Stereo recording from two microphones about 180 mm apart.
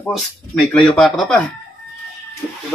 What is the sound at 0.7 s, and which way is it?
Speech, centre (ahead or behind).